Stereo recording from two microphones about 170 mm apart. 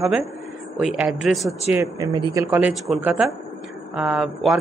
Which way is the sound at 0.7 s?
5° right (ahead or behind).